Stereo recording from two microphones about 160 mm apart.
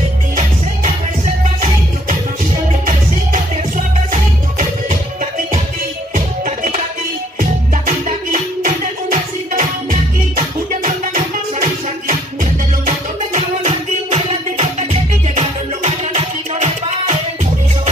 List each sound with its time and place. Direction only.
3.7 s music: 50° right (ahead or behind)